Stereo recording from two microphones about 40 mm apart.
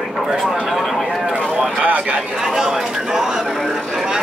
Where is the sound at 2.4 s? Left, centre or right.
Centre.